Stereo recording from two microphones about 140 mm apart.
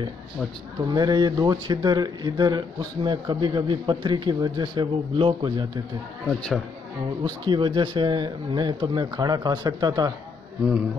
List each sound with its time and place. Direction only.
0.9 s speech: 30° right (ahead or behind)
6.2 s speech: 5° left (ahead or behind)
7.2 s speech: 35° right (ahead or behind)